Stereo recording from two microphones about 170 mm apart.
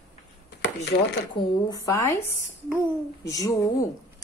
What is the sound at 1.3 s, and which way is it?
Speech, 20° left (ahead or behind).